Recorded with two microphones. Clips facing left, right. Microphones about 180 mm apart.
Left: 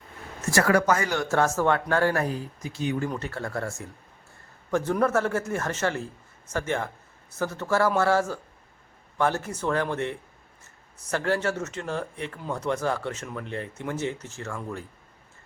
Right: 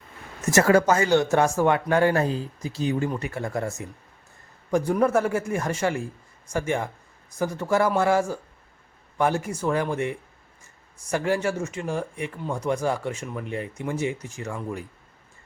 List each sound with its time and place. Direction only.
0.4 s speech: 25° right (ahead or behind)
3.1 s speech: 15° right (ahead or behind)